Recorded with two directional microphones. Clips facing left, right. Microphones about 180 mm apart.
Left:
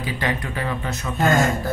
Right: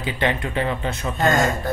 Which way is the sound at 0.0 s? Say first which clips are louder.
Right 2 dB; 25° right (ahead or behind).